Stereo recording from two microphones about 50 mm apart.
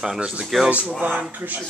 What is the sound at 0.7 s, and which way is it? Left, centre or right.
Speech, right.